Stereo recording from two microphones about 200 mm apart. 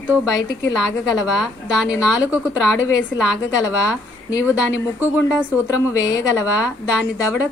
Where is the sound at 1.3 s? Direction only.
5° right (ahead or behind).